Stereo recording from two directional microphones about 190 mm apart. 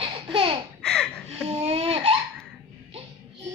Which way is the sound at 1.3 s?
35° right (ahead or behind).